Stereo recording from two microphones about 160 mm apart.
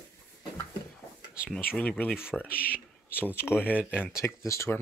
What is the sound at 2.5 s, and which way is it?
Speech, 65° left (ahead or behind).